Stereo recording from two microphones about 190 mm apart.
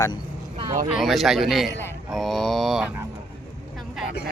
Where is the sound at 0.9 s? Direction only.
Centre (ahead or behind).